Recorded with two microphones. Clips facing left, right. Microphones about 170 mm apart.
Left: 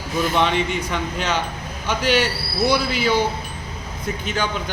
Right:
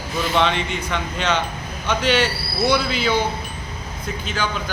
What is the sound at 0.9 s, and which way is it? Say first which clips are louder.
Speech: right 1 dB; 10° left (ahead or behind).